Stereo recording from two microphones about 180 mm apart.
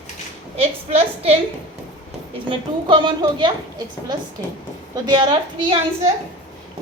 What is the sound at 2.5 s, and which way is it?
A woman's voice, 25° right (ahead or behind).